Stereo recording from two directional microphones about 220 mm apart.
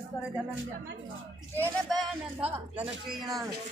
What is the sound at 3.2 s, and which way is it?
Speech, 15° right (ahead or behind).